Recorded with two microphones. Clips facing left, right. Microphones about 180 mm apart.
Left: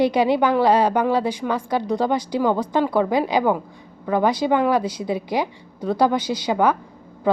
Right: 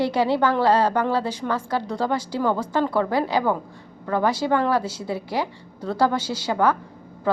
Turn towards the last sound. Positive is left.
turn(degrees=15)  # may be behind; listen again after turning